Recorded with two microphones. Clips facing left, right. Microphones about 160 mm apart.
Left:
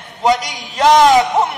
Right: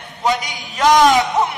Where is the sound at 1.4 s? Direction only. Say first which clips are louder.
Left 2 dB; 30° left (ahead or behind).